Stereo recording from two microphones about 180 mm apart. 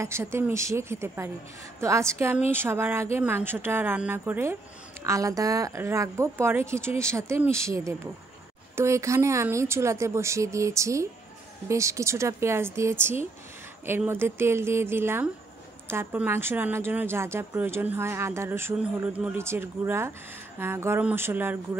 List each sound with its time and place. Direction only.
0.0 s a woman's voice: 15° right (ahead or behind)